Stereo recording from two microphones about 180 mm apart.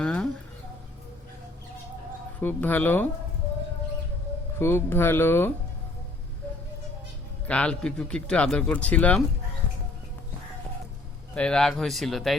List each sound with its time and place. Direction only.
0.0 s a sound: 5° left (ahead or behind)
2.4 s speech: 10° left (ahead or behind)
4.6 s speech: 15° left (ahead or behind)
7.4 s a man's voice: 5° left (ahead or behind)
11.3 s a man's voice: 5° left (ahead or behind)